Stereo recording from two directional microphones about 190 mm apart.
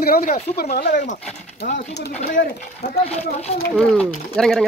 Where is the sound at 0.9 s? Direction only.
40° left (ahead or behind).